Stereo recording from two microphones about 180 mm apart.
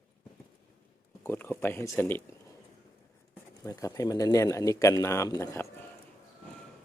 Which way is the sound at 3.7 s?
20° left (ahead or behind).